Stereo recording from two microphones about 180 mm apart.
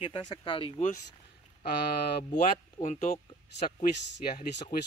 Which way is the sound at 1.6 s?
60° left (ahead or behind).